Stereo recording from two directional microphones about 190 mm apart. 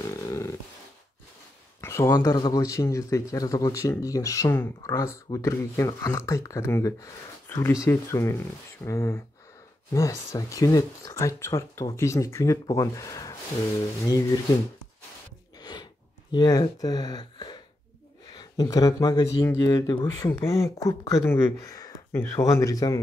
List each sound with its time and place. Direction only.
0.3 s a sound: 15° left (ahead or behind)
1.8 s speech: 15° left (ahead or behind)
15.6 s gasp: 20° left (ahead or behind)
18.3 s speech: 20° left (ahead or behind)